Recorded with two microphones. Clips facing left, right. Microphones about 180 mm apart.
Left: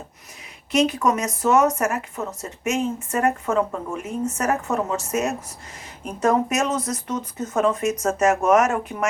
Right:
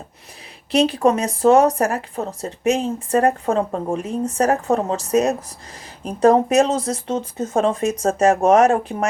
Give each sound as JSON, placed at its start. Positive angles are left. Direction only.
{"t": 0.7, "sound": "speech", "side_deg": -30}